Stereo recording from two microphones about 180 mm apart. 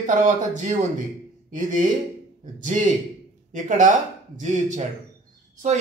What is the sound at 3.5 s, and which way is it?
Speech, 45° right (ahead or behind).